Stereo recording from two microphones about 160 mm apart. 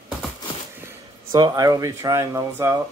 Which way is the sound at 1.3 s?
25° right (ahead or behind).